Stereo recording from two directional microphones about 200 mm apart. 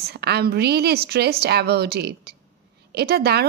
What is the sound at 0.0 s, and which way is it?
A woman's voice, 55° right (ahead or behind).